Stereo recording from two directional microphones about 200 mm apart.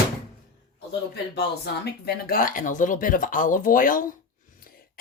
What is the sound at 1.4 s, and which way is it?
Speech, 55° left (ahead or behind).